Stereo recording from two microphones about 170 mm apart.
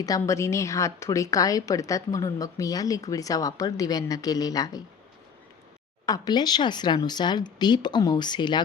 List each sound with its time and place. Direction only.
0.0 s a woman's voice: 20° left (ahead or behind)
6.1 s a woman's voice: 20° left (ahead or behind)